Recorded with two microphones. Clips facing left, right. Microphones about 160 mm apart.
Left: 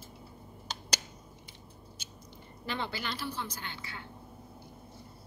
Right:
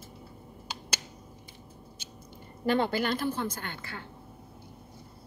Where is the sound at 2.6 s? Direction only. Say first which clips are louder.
Right 10 dB; 50° right (ahead or behind).